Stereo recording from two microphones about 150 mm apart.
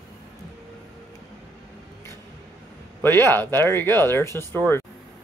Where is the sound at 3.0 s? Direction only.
15° left (ahead or behind).